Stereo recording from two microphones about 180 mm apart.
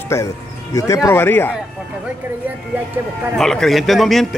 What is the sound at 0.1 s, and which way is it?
Speech, 15° left (ahead or behind).